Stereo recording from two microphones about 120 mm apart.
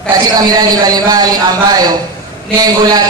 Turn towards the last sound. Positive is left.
turn(degrees=-35)  # may be behind; listen again after turning